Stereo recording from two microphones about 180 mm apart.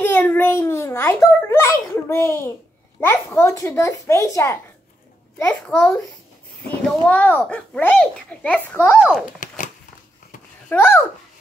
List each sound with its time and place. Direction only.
0.0 s a child's voice: 10° left (ahead or behind)
5.4 s a child's voice: 5° left (ahead or behind)
9.4 s a sound: 50° left (ahead or behind)
10.7 s a child's voice: 10° left (ahead or behind)